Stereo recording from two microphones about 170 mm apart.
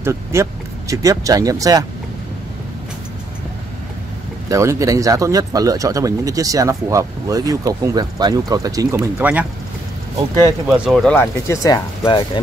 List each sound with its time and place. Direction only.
0.0 s speech: 15° right (ahead or behind)
4.5 s speech: 20° right (ahead or behind)
10.9 s speech: centre (ahead or behind)
11.1 s speech: 20° left (ahead or behind)